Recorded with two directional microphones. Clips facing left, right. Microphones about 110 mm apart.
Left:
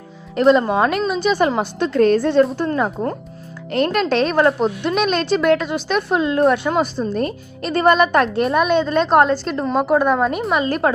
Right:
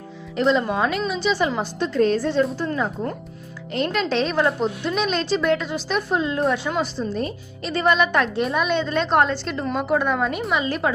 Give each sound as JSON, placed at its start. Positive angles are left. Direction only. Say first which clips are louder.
{"t": 0.3, "sound": "a woman's voice", "louder": "left 6 dB", "side_deg": 55}